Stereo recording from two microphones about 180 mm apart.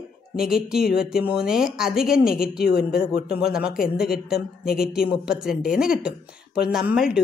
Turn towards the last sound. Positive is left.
turn(degrees=-5)  # may be behind; listen again after turning